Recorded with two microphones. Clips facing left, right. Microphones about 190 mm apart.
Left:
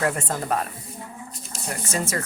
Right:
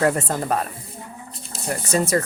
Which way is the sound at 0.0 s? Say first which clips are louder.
Right 5 dB; 35° right (ahead or behind).